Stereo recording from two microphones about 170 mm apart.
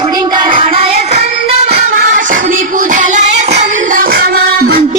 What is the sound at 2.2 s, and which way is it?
Music, 50° right (ahead or behind).